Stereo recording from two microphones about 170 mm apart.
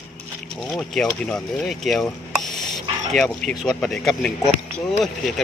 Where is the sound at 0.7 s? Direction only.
5° left (ahead or behind).